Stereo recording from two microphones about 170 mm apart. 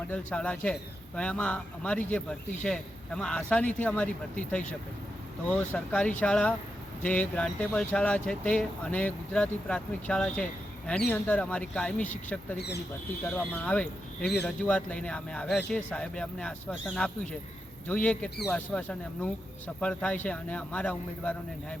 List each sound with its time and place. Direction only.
0.1 s speech: 5° left (ahead or behind)
12.5 s speech: 75° left (ahead or behind)
13.2 s speech: 5° left (ahead or behind)